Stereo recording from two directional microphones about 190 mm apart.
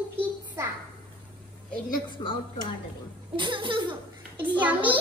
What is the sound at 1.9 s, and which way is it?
Speech, 25° left (ahead or behind).